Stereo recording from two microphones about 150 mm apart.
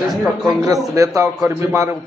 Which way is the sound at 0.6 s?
20° right (ahead or behind).